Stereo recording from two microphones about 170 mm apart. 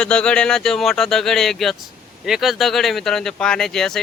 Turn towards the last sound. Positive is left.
turn(degrees=5)  # may be behind; listen again after turning